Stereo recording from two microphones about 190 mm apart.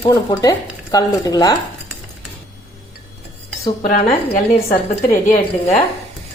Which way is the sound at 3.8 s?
45° left (ahead or behind).